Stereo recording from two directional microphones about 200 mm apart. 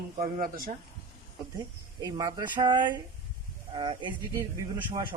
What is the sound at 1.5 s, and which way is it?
Speech, 20° right (ahead or behind).